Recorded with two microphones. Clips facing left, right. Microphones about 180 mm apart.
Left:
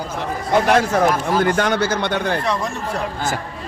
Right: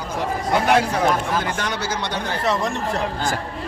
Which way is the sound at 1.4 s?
55° left (ahead or behind).